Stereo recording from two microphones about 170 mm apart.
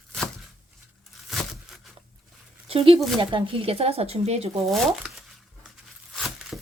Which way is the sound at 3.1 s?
30° right (ahead or behind).